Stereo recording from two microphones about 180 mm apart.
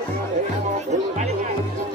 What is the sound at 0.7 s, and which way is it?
Music, 40° right (ahead or behind).